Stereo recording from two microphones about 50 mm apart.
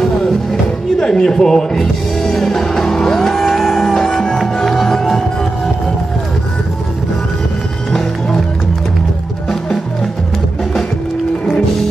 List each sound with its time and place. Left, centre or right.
0.0 s music: centre
7.9 s music: centre